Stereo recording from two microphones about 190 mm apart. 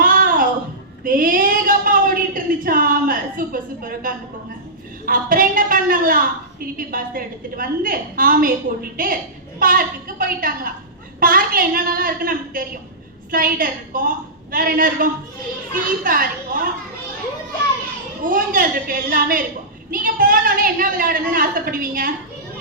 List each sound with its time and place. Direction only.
0.0 s music: 45° right (ahead or behind)
1.0 s a sound: 45° right (ahead or behind)
5.0 s a woman's voice: 50° right (ahead or behind)
18.2 s a woman's voice: 45° right (ahead or behind)